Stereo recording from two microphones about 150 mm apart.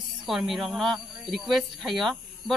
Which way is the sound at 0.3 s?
Centre (ahead or behind).